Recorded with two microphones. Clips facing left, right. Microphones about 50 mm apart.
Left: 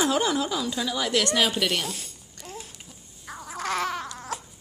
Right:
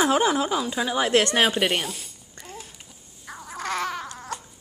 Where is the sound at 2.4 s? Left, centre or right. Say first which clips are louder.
Left 1 dB; centre.